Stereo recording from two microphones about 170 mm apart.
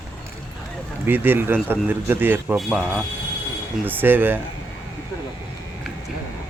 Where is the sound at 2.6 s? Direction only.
Centre (ahead or behind).